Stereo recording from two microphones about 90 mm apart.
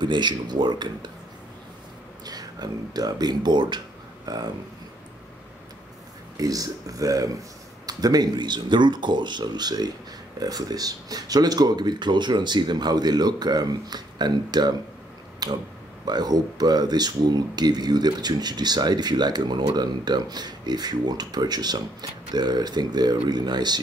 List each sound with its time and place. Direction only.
0.0 s speech: 55° right (ahead or behind)
2.2 s speech: 50° right (ahead or behind)
6.3 s speech: 40° right (ahead or behind)
15.4 s a sound: 50° right (ahead or behind)
16.1 s speech: 50° right (ahead or behind)